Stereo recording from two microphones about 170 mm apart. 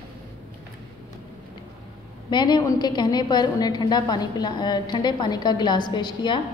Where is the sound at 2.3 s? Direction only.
25° left (ahead or behind).